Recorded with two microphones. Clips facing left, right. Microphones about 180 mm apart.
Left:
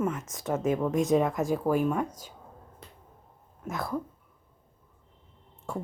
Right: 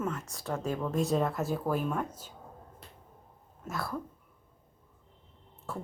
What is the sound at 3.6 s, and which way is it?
Speech, 20° left (ahead or behind).